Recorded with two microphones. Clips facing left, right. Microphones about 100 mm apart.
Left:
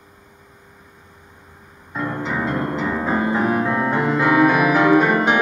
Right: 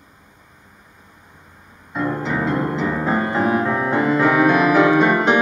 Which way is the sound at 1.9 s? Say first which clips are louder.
Right 2 dB; centre (ahead or behind).